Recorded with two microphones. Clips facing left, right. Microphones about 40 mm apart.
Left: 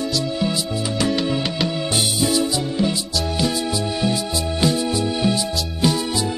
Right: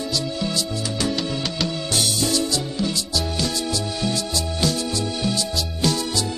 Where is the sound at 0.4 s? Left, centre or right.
Centre.